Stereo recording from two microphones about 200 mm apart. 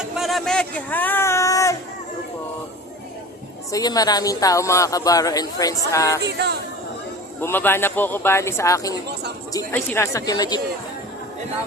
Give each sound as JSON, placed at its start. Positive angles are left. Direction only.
{"t": 0.0, "sound": "a sound", "side_deg": 0}
{"t": 3.7, "sound": "speech", "side_deg": 20}
{"t": 6.2, "sound": "speech", "side_deg": -55}
{"t": 7.4, "sound": "speech", "side_deg": 10}